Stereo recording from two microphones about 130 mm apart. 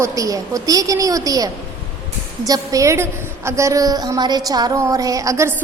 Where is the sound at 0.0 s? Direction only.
25° right (ahead or behind).